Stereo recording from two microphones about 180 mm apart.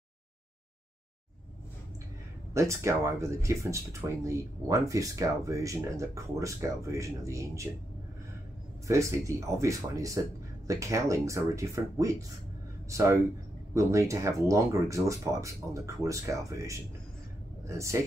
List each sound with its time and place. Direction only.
2.5 s speech: 15° right (ahead or behind)
8.8 s speech: 15° right (ahead or behind)